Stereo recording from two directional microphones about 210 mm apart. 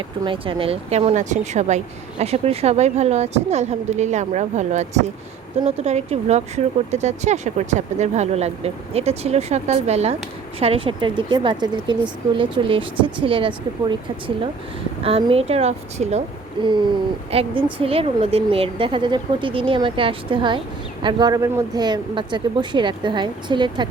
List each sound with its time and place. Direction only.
0.3 s a woman's voice: 25° right (ahead or behind)